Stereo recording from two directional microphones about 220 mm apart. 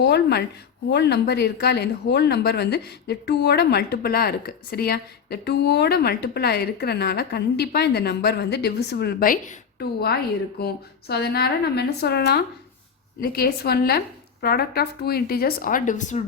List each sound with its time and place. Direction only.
0.0 s speech: 50° left (ahead or behind)